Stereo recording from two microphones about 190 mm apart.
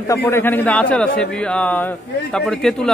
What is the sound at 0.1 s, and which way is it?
A man's voice, 10° left (ahead or behind).